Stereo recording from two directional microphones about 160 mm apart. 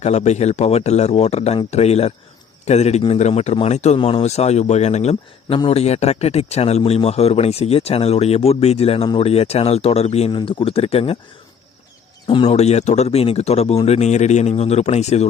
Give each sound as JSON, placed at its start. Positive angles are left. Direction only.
{"t": 0.0, "sound": "a man's voice", "side_deg": 45}
{"t": 12.5, "sound": "a man's voice", "side_deg": 40}